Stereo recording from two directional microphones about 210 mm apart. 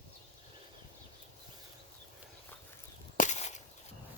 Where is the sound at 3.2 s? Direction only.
35° left (ahead or behind).